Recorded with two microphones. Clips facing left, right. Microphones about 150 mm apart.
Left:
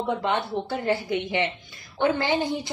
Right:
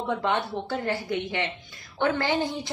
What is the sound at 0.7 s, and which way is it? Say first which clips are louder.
A woman's voice: left 3 dB; 20° left (ahead or behind).